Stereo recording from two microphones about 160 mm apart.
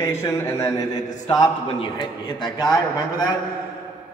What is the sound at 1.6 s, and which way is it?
A man's voice, 30° left (ahead or behind).